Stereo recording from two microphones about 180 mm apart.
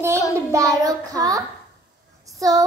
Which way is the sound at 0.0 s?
15° right (ahead or behind).